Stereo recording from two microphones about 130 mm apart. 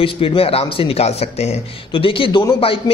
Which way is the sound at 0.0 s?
45° left (ahead or behind).